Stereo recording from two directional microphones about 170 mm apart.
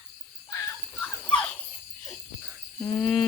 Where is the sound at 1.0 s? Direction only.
5° left (ahead or behind).